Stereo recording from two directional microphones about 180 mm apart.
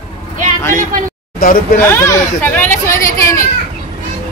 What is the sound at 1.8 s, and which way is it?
Speech, 15° left (ahead or behind).